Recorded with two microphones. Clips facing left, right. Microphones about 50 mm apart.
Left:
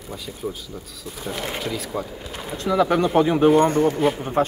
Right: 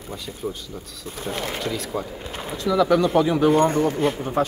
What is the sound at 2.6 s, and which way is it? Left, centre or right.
Speech, left.